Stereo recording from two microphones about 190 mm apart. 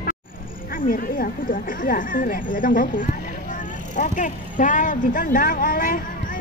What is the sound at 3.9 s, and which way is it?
Speech, 40° left (ahead or behind).